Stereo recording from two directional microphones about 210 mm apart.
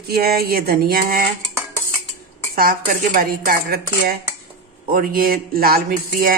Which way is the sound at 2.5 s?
45° right (ahead or behind).